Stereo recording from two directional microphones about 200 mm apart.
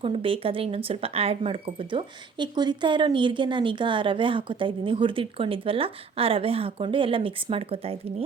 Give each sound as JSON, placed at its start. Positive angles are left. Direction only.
{"t": 0.0, "sound": "speech", "side_deg": -25}